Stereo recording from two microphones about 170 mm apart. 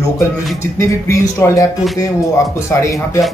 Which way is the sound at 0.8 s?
15° left (ahead or behind).